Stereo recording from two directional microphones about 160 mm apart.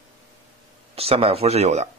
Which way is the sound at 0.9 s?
35° right (ahead or behind).